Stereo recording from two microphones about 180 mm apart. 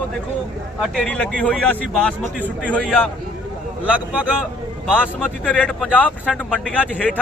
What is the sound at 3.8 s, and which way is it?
Speech, 10° right (ahead or behind).